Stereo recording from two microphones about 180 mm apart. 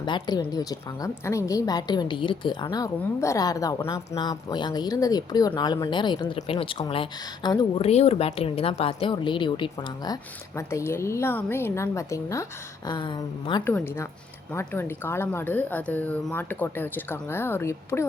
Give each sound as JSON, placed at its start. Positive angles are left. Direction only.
{"t": 0.0, "sound": "a woman's voice", "side_deg": 25}
{"t": 13.7, "sound": "a woman's voice", "side_deg": 15}